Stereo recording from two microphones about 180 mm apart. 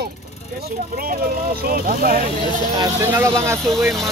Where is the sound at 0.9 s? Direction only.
55° right (ahead or behind).